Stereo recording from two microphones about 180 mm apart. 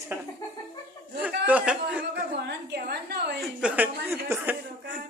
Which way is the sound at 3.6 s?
10° right (ahead or behind).